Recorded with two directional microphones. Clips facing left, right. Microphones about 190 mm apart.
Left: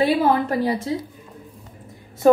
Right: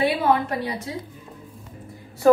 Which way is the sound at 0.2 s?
30° left (ahead or behind).